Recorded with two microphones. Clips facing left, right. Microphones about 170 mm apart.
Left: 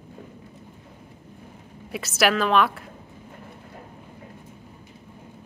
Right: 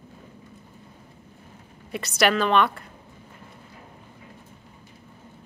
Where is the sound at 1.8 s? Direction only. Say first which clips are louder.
Even; centre (ahead or behind).